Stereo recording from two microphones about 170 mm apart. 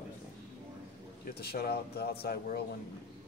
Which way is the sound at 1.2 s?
65° left (ahead or behind).